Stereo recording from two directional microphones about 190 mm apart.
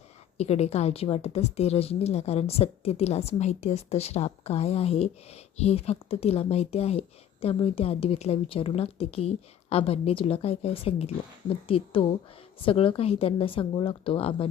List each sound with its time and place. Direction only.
0.3 s a woman's voice: 35° left (ahead or behind)